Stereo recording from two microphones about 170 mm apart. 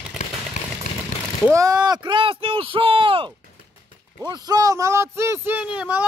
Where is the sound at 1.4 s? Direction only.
20° right (ahead or behind).